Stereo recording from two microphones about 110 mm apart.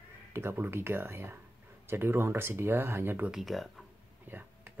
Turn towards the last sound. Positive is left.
turn(degrees=-15)  # may be behind; listen again after turning